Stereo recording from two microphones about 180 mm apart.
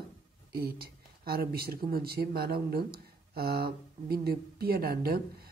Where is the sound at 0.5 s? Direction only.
60° right (ahead or behind).